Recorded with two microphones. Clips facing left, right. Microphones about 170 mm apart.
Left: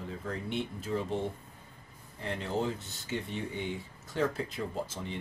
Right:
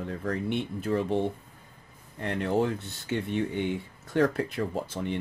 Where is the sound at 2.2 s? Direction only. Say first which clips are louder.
Right 6 dB; 60° right (ahead or behind).